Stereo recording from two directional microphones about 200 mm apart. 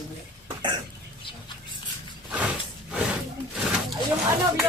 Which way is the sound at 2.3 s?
5° right (ahead or behind).